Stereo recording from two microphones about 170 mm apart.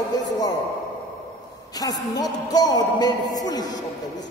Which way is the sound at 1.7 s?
20° left (ahead or behind).